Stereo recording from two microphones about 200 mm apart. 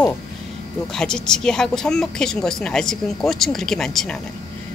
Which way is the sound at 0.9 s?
5° left (ahead or behind).